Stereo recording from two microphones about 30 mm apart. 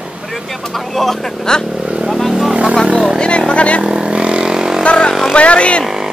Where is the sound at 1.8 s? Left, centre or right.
Right.